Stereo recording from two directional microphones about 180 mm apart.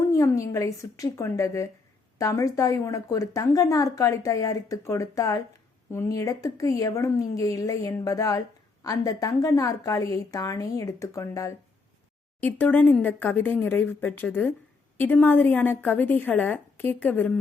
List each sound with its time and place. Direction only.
0.0 s a woman's voice: 15° left (ahead or behind)